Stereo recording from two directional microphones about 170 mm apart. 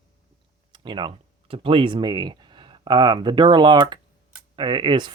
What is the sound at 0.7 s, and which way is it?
Speech, 25° right (ahead or behind).